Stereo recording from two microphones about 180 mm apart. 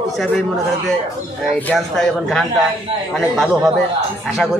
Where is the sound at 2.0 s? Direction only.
Centre (ahead or behind).